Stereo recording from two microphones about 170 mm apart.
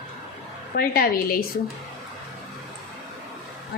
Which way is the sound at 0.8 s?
60° left (ahead or behind).